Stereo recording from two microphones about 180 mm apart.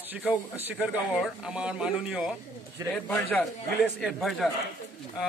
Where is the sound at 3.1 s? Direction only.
10° left (ahead or behind).